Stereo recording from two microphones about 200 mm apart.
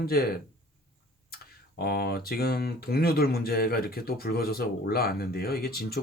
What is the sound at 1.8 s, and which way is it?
Speech, 50° left (ahead or behind).